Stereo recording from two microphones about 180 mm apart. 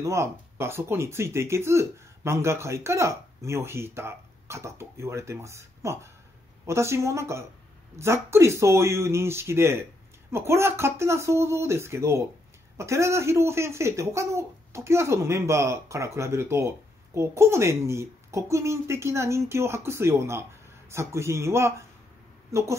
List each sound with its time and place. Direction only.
0.0 s a woman's voice: 15° right (ahead or behind)